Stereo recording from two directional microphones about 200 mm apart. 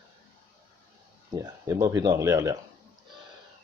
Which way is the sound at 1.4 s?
15° right (ahead or behind).